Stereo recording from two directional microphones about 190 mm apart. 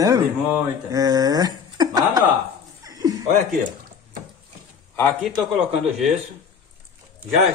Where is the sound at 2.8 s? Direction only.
20° right (ahead or behind).